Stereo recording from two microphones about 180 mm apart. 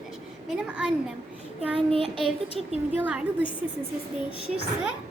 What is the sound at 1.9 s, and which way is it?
Child singing, 30° right (ahead or behind).